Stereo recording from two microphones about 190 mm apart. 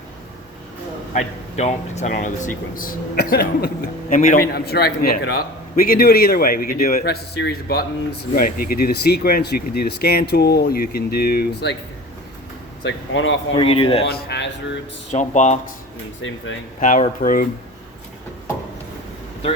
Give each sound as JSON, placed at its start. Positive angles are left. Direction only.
{"t": 1.1, "sound": "a man's voice", "side_deg": 35}
{"t": 12.8, "sound": "speech", "side_deg": 80}
{"t": 13.6, "sound": "speech", "side_deg": 30}
{"t": 14.0, "sound": "speech", "side_deg": 60}
{"t": 15.1, "sound": "speech", "side_deg": 40}
{"t": 16.2, "sound": "speech", "side_deg": 90}
{"t": 16.8, "sound": "a man's voice", "side_deg": 40}